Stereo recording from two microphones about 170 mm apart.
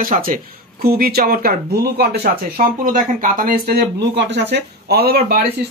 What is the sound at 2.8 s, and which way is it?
Speech, 50° right (ahead or behind).